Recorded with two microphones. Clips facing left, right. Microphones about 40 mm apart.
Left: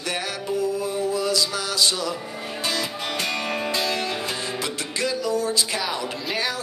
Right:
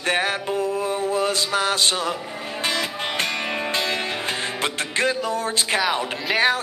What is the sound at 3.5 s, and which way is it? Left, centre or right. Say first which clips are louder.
Music: even; right.